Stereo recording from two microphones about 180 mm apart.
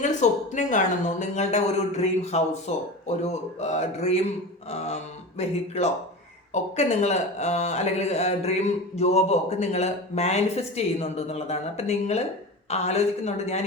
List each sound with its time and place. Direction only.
0.0 s a man's voice: 40° left (ahead or behind)